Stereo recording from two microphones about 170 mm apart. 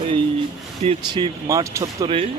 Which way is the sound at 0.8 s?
30° right (ahead or behind).